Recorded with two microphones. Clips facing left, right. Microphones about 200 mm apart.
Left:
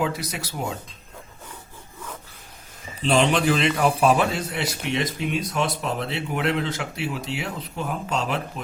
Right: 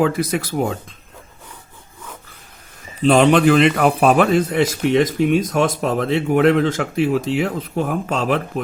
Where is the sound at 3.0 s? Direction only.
55° right (ahead or behind); by 4.3 s 70° right (ahead or behind).